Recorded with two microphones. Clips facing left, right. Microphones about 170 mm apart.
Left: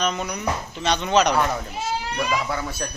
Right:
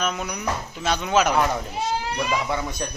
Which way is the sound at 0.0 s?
5° right (ahead or behind).